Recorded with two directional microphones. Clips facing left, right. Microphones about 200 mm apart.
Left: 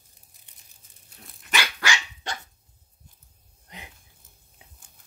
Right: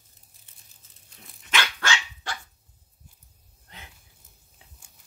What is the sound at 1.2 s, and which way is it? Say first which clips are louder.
Dog: even; 5° left (ahead or behind).